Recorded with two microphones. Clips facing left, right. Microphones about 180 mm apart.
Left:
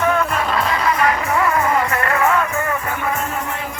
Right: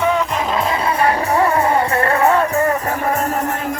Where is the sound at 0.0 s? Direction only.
15° right (ahead or behind).